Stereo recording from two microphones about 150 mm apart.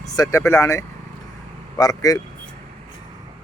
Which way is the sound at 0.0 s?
20° left (ahead or behind).